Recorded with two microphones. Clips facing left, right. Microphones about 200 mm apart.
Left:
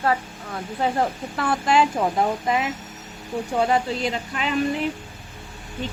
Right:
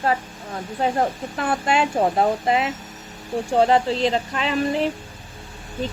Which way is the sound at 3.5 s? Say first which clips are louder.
Right 4 dB; 30° right (ahead or behind).